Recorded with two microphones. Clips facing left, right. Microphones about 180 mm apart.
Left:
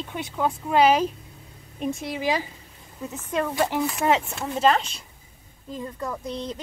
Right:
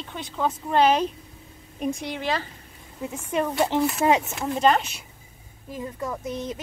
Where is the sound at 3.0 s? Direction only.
10° right (ahead or behind).